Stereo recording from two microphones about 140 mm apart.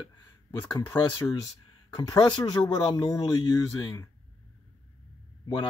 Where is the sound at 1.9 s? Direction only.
30° left (ahead or behind).